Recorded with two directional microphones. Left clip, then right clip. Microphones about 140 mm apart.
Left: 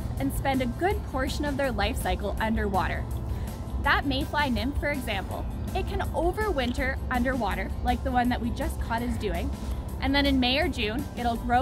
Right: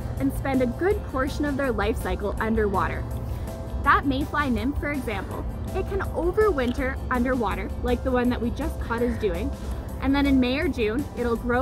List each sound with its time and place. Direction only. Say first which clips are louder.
0.2 s speech: right 3 dB; 15° left (ahead or behind)